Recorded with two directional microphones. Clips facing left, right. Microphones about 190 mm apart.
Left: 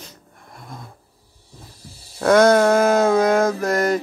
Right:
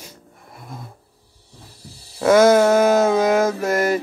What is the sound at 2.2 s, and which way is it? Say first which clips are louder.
Mantra: right 1 dB; 5° right (ahead or behind).